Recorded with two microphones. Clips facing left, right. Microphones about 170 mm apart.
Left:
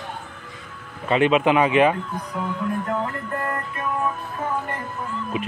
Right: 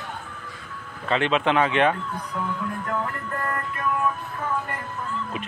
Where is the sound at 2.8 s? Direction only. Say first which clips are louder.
Left 3 dB; 20° left (ahead or behind).